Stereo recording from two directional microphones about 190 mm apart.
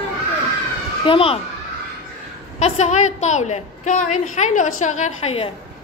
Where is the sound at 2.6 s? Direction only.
35° left (ahead or behind).